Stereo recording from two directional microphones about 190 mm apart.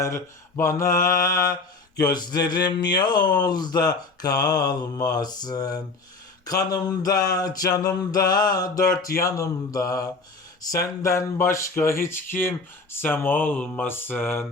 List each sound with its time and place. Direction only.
0.0 s speech: 15° left (ahead or behind)
2.0 s speech: 20° left (ahead or behind)